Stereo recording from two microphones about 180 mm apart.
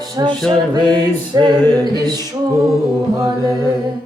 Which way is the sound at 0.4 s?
5° left (ahead or behind).